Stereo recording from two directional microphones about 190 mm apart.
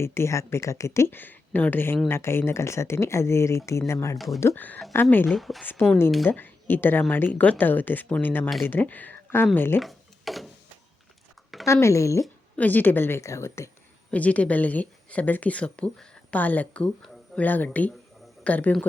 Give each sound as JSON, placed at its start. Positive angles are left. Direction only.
{"t": 0.0, "sound": "a woman's voice", "side_deg": 15}
{"t": 9.8, "sound": "a sound", "side_deg": 0}
{"t": 11.6, "sound": "speech", "side_deg": 15}